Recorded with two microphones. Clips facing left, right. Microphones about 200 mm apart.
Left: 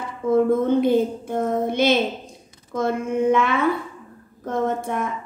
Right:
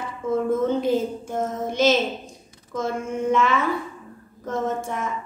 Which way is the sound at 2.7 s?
60° left (ahead or behind).